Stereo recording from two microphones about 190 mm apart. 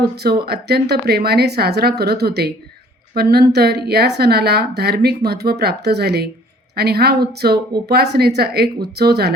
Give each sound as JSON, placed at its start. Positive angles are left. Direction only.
{"t": 0.2, "sound": "a woman's voice", "side_deg": -55}